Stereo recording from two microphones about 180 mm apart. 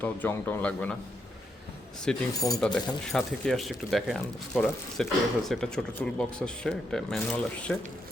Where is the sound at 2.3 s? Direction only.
20° left (ahead or behind).